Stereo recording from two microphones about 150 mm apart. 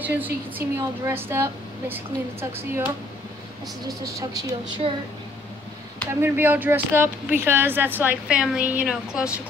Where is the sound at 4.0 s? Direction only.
25° right (ahead or behind).